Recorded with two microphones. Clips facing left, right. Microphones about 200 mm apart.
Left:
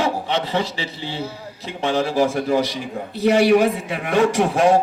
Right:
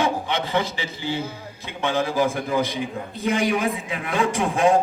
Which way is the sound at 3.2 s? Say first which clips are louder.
Left 8 dB; 75° left (ahead or behind).